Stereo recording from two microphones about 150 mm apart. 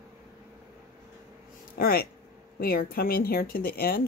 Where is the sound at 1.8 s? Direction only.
90° left.